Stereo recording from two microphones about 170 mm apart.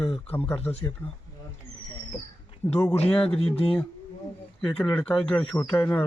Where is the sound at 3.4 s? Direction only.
35° left (ahead or behind).